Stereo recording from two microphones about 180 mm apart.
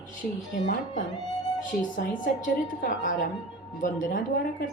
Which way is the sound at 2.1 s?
45° left (ahead or behind).